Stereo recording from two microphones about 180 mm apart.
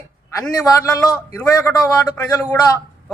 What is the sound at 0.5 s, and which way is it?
A woman's voice, 20° left (ahead or behind).